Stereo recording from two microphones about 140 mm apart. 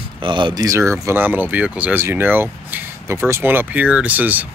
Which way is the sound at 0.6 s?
20° right (ahead or behind).